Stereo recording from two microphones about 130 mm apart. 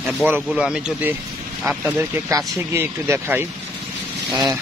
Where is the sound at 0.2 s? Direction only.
10° right (ahead or behind).